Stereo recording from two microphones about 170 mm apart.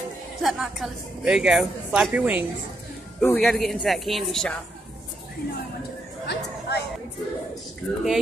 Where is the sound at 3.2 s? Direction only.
5° left (ahead or behind).